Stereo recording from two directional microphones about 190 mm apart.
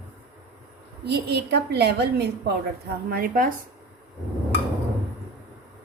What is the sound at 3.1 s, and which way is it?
Speech, 50° right (ahead or behind).